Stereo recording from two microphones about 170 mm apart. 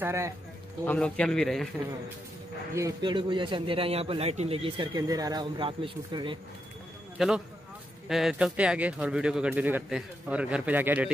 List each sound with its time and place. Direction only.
0.0 s speech: 15° right (ahead or behind)
0.8 s speech: 5° left (ahead or behind)
2.7 s a man's voice: 20° right (ahead or behind)
7.2 s speech: 5° right (ahead or behind)